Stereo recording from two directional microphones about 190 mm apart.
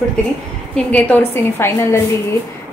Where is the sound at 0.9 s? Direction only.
10° left (ahead or behind).